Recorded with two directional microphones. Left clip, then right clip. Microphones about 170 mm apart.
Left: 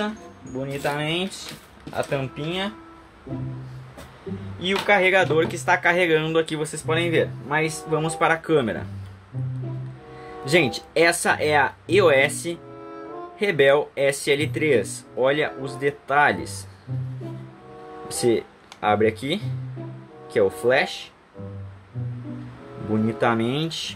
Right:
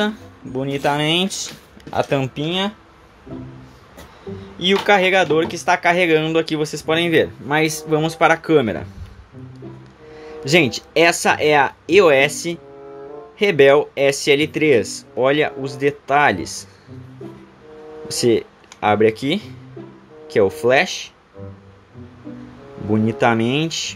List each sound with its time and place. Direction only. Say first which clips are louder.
0.6 s speech: right 7 dB; 55° right (ahead or behind)
4.6 s speech: right 5 dB; 55° right (ahead or behind)
5.1 s speech: right 3 dB; 35° right (ahead or behind)
6.9 s speech: right 5 dB; 55° right (ahead or behind)
8.0 s speech: right 6 dB; 40° right (ahead or behind)
10.4 s speech: right 4 dB; 35° right (ahead or behind)
13.4 s speech: right 6 dB; 35° right (ahead or behind)
18.1 s speech: right 5 dB; 35° right (ahead or behind)
23.0 s speech: right 5 dB; 40° right (ahead or behind)